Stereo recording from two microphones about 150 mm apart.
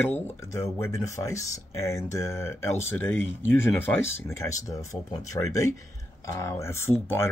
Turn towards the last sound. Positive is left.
turn(degrees=15)  # may be behind; listen again after turning